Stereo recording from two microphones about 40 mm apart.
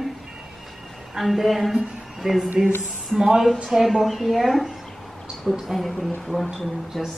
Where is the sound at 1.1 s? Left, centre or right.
Centre.